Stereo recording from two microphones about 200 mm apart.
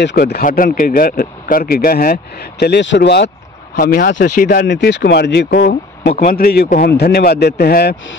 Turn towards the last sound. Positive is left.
turn(degrees=50)  # may be behind; listen again after turning